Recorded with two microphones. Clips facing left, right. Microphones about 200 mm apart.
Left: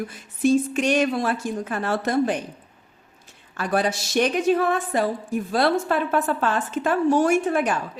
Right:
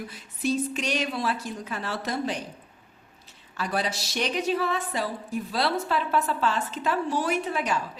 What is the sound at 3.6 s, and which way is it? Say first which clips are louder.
A woman's voice: left 6 dB; 50° left (ahead or behind).